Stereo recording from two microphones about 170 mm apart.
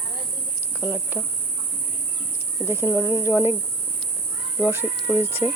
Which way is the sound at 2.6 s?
15° right (ahead or behind).